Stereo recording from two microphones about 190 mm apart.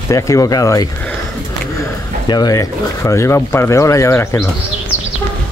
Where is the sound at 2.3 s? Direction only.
20° left (ahead or behind).